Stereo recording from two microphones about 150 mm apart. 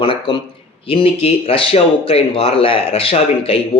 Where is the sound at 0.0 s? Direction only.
30° left (ahead or behind).